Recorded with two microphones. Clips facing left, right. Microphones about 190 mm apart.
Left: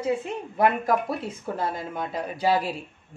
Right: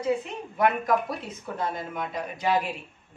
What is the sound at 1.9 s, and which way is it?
Speech, 30° left (ahead or behind).